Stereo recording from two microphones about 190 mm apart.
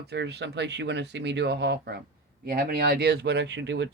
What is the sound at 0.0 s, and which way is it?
Speech, 60° right (ahead or behind).